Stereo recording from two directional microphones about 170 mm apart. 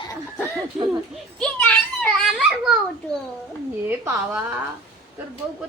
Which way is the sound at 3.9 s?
15° right (ahead or behind).